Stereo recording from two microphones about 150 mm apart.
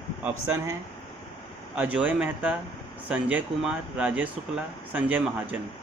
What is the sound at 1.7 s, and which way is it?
Speech, 10° right (ahead or behind).